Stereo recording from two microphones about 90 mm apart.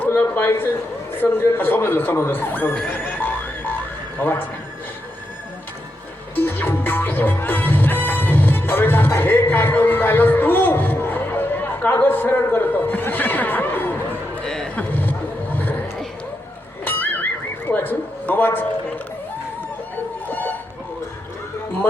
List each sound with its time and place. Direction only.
0.0 s a sound: 25° left (ahead or behind)
1.1 s a man's voice: 20° left (ahead or behind)
2.8 s music: 20° left (ahead or behind)
4.2 s a man's voice: 20° left (ahead or behind)
6.3 s music: 20° left (ahead or behind)
14.4 s a sound: 10° left (ahead or behind)
16.8 s music: 20° left (ahead or behind)
17.7 s a sound: 20° left (ahead or behind)
20.2 s music: 20° left (ahead or behind)